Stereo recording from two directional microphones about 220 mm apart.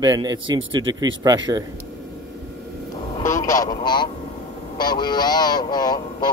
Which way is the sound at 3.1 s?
15° left (ahead or behind).